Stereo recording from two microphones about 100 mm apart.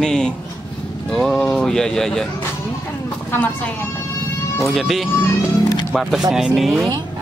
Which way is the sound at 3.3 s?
15° left (ahead or behind).